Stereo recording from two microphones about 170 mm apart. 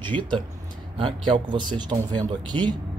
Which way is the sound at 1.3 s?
25° right (ahead or behind).